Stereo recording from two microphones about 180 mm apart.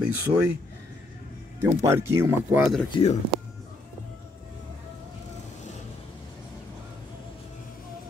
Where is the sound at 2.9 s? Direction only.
30° left (ahead or behind).